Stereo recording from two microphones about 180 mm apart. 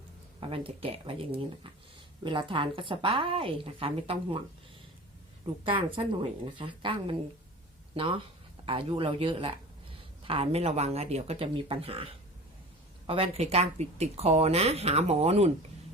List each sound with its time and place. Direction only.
0.3 s a woman's voice: 30° right (ahead or behind)
6.6 s a woman's voice: 30° right (ahead or behind)
13.1 s speech: 35° right (ahead or behind)